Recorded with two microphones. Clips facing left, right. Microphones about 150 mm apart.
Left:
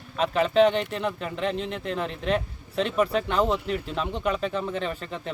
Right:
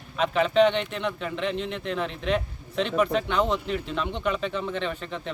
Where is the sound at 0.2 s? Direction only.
Centre (ahead or behind).